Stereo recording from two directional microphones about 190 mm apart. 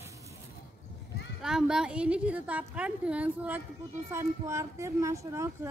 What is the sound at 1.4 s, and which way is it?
A woman's voice, 5° right (ahead or behind).